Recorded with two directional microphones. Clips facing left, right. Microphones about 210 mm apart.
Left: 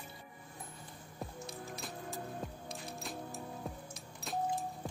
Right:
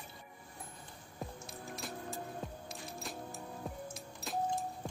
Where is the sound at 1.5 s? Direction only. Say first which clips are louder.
Even; centre (ahead or behind).